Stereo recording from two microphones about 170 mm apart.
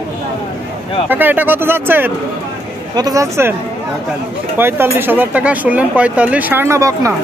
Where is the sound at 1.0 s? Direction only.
10° right (ahead or behind).